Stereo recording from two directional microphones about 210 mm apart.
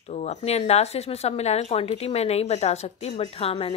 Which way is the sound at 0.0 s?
30° left (ahead or behind).